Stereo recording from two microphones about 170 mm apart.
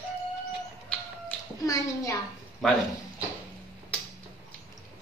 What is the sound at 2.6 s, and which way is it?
Speech, centre (ahead or behind).